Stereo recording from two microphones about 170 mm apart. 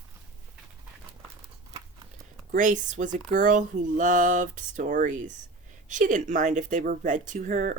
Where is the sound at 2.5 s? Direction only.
50° right (ahead or behind).